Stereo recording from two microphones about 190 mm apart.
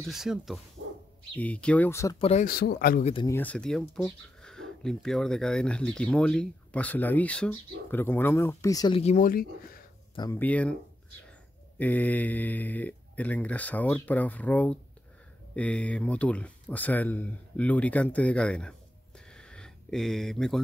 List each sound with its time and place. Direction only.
0.0 s speech: centre (ahead or behind); by 2.1 s 15° left (ahead or behind)
2.1 s speech: 30° left (ahead or behind)
2.4 s speech: 50° left (ahead or behind)
3.0 s speech: 30° left (ahead or behind)
3.3 s speech: 10° left (ahead or behind)
9.0 s speech: 40° left (ahead or behind)
10.1 s speech: 20° left (ahead or behind)
10.4 s speech: 5° left (ahead or behind)
11.8 s speech: 10° left (ahead or behind)